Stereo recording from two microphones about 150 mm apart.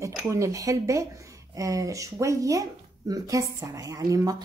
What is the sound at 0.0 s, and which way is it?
A woman's voice, 20° right (ahead or behind).